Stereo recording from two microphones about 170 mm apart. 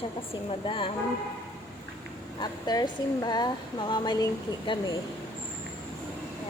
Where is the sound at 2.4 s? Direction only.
25° left (ahead or behind).